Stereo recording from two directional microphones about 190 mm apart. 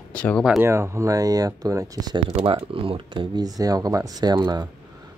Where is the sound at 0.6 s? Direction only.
15° right (ahead or behind).